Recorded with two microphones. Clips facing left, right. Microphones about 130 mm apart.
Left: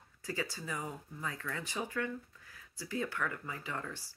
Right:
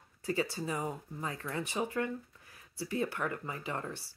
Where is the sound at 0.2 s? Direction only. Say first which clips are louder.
Right 6 dB; 20° right (ahead or behind).